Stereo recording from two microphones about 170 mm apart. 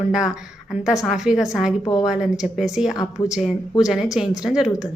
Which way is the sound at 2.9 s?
20° left (ahead or behind).